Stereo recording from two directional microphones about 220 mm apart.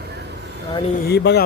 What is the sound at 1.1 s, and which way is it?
Speech, 50° left (ahead or behind).